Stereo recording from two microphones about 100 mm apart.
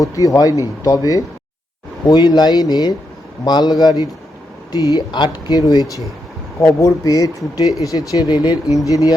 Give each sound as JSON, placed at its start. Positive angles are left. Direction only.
{"t": 0.0, "sound": "a man's voice", "side_deg": 35}